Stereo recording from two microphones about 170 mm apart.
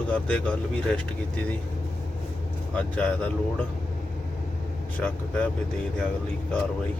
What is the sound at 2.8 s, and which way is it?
Speech, 5° left (ahead or behind).